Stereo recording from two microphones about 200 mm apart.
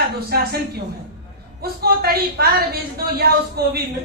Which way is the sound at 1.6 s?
50° right (ahead or behind).